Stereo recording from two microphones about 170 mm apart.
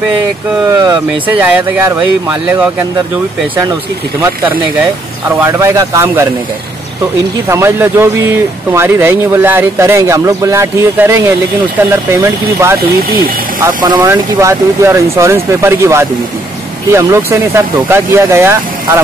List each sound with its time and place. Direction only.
0.7 s speech: 15° right (ahead or behind)
5.4 s speech: 15° right (ahead or behind)
7.4 s speech: 15° right (ahead or behind)
13.7 s speech: 25° right (ahead or behind)